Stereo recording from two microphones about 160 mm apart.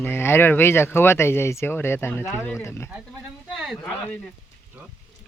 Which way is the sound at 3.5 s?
Centre (ahead or behind).